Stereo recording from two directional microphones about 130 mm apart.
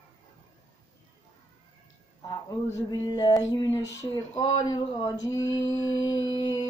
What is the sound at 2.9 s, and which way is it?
Female singing, 35° left (ahead or behind).